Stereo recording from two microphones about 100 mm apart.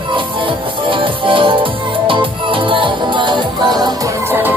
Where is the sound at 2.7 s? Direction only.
55° right (ahead or behind).